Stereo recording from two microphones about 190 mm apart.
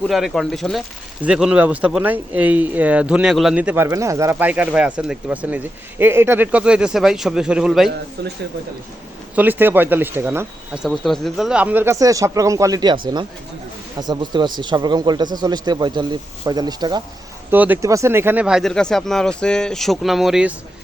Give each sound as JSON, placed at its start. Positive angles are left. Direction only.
{"t": 0.1, "sound": "speech", "side_deg": 0}
{"t": 8.2, "sound": "speech", "side_deg": -60}
{"t": 9.3, "sound": "speech", "side_deg": -10}
{"t": 10.8, "sound": "speech", "side_deg": 0}
{"t": 14.1, "sound": "speech", "side_deg": -25}
{"t": 17.5, "sound": "speech", "side_deg": -10}